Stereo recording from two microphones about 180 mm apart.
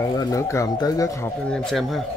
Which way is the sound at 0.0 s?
20° left (ahead or behind).